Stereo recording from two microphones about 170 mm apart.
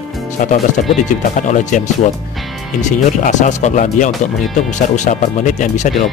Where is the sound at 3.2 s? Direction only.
45° left (ahead or behind).